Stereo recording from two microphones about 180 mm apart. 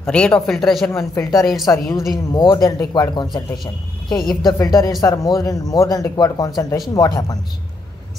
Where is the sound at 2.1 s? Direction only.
25° left (ahead or behind).